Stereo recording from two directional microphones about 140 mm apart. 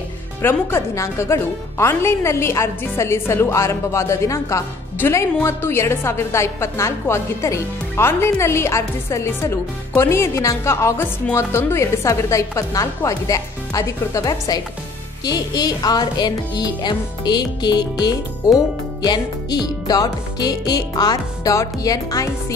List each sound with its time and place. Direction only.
0.4 s a woman's voice: 15° left (ahead or behind)